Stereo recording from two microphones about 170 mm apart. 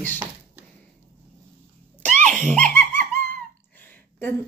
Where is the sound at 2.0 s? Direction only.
45° right (ahead or behind).